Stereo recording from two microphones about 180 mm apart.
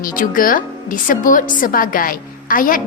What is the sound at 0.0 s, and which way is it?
A woman's voice, 50° left (ahead or behind).